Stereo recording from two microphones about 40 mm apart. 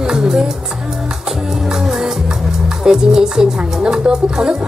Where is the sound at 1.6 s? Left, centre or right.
Centre.